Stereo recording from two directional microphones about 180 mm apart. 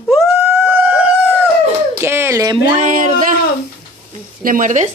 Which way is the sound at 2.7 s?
45° right (ahead or behind).